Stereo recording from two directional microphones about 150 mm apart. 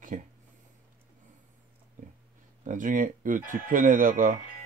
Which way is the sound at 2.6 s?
60° right (ahead or behind).